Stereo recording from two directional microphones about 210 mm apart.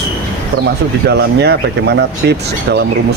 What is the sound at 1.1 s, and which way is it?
Speech, 50° right (ahead or behind).